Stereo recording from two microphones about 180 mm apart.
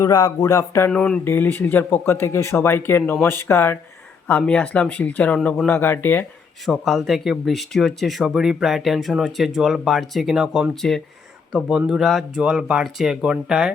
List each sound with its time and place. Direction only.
0.0 s speech: 20° left (ahead or behind)
0.9 s speech: 5° left (ahead or behind)
6.7 s speech: centre (ahead or behind)